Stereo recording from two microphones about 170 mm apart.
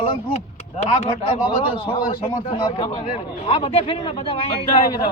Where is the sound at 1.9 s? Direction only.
30° left (ahead or behind).